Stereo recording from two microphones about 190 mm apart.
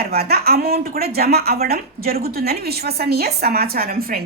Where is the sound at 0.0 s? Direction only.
55° right (ahead or behind).